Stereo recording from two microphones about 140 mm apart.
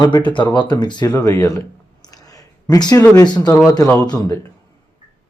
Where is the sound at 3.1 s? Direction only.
30° left (ahead or behind).